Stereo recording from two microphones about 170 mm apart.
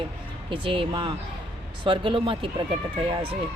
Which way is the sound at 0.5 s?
30° right (ahead or behind).